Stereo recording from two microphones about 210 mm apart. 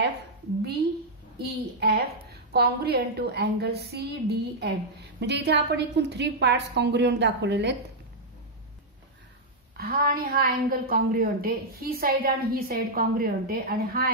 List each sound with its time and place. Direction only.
1.4 s a woman's voice: 50° right (ahead or behind)
9.8 s a woman's voice: 45° right (ahead or behind)